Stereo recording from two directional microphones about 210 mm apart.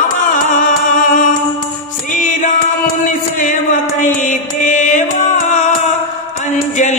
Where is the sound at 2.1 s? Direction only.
35° left (ahead or behind).